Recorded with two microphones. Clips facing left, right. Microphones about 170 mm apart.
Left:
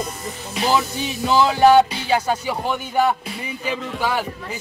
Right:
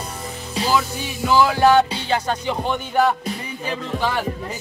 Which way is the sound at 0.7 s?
20° left (ahead or behind).